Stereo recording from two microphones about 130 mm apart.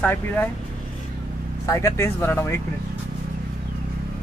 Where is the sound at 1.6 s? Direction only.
25° left (ahead or behind).